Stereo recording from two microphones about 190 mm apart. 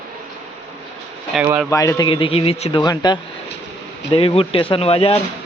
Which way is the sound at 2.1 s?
30° left (ahead or behind).